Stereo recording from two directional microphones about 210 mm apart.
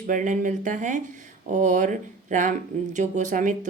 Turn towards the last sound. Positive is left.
turn(degrees=-35)  # may be behind; listen again after turning